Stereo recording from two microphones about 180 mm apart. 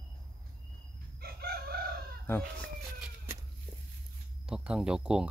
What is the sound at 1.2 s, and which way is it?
Chicken, 60° right (ahead or behind).